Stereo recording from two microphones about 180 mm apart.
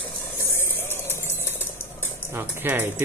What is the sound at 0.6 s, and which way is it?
Music, 15° left (ahead or behind).